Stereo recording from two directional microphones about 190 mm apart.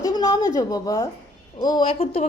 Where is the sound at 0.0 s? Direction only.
20° left (ahead or behind).